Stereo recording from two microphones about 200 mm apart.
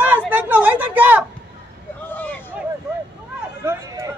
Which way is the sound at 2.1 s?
10° left (ahead or behind).